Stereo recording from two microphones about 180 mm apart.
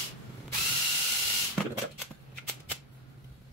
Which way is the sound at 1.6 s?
5° left (ahead or behind).